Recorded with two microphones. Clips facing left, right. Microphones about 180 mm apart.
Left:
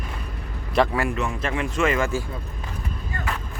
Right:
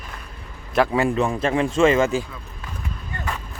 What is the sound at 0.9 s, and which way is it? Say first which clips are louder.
A man's voice: right 5 dB; 30° right (ahead or behind).